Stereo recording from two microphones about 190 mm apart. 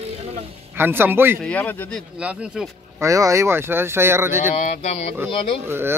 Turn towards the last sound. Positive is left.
turn(degrees=-10)  # may be behind; listen again after turning